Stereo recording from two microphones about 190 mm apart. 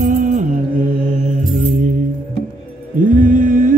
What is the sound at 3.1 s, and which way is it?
Mantra, 45° right (ahead or behind).